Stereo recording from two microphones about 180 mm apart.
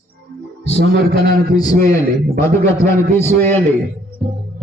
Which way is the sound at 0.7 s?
35° left (ahead or behind).